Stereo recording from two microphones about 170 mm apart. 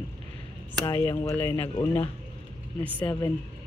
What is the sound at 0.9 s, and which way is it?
Speech, 15° left (ahead or behind).